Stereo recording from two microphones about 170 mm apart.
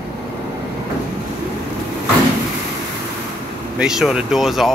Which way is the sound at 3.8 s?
5° right (ahead or behind).